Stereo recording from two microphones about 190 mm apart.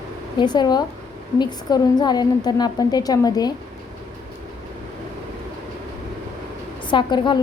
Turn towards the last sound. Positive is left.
turn(degrees=25)  # may be behind; listen again after turning